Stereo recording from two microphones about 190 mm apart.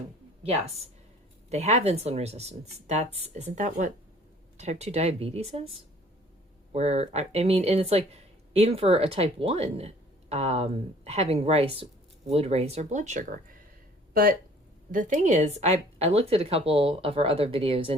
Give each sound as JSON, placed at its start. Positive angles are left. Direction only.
{"t": 1.5, "sound": "speech", "side_deg": -35}
{"t": 6.7, "sound": "speech", "side_deg": -35}